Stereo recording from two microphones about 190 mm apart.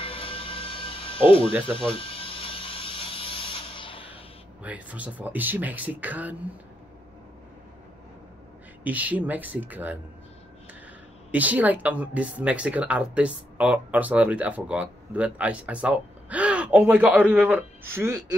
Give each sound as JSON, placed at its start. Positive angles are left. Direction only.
{"t": 0.0, "sound": "music", "side_deg": 30}
{"t": 1.8, "sound": "a sound", "side_deg": 30}
{"t": 4.6, "sound": "speech", "side_deg": -5}
{"t": 8.8, "sound": "speech", "side_deg": -10}
{"t": 11.3, "sound": "speech", "side_deg": -10}